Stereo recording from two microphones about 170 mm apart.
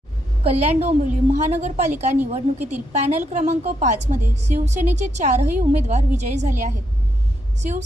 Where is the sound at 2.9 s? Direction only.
45° right (ahead or behind).